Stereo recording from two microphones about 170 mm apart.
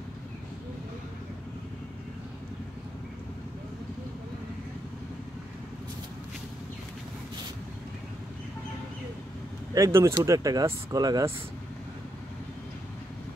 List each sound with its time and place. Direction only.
9.8 s speech: 15° right (ahead or behind)